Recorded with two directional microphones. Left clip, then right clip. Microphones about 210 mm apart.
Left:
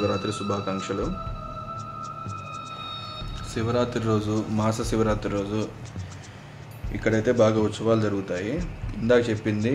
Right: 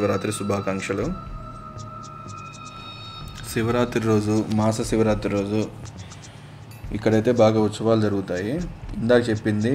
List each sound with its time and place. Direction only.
0.0 s speech: 15° right (ahead or behind)
2.0 s hum: centre (ahead or behind)
3.5 s speech: 15° right (ahead or behind)
6.9 s speech: 20° right (ahead or behind)